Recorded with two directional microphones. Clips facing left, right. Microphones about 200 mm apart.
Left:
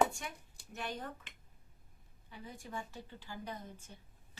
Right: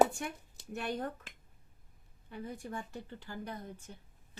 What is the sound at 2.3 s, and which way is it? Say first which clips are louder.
Speech: right 7 dB; 55° right (ahead or behind).